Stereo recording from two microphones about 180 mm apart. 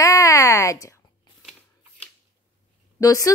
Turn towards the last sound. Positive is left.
turn(degrees=20)  # may be behind; listen again after turning